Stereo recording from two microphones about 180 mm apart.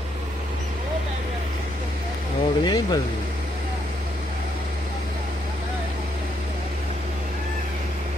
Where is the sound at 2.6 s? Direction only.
20° left (ahead or behind).